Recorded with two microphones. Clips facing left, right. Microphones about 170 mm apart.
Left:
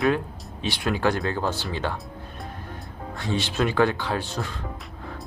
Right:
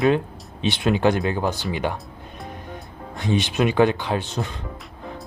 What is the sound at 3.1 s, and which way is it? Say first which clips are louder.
Speech: right 4 dB; 20° right (ahead or behind).